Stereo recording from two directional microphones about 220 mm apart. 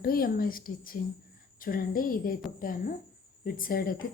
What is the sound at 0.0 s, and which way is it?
A woman's voice, 40° left (ahead or behind).